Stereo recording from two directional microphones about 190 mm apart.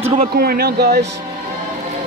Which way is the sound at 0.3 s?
55° right (ahead or behind).